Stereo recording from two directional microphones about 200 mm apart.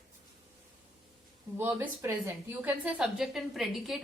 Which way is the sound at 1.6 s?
10° right (ahead or behind).